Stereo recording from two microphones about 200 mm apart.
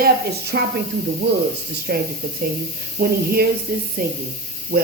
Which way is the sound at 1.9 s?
55° right (ahead or behind).